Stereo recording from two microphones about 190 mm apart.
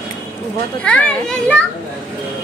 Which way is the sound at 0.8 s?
5° left (ahead or behind).